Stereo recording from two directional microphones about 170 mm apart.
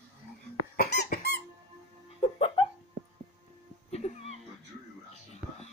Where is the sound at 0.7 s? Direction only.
70° left (ahead or behind).